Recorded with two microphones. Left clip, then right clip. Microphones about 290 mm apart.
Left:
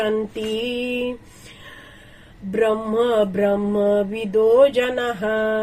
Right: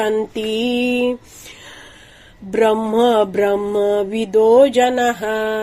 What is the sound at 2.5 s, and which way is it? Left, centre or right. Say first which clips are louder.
Mantra: right 4 dB; right.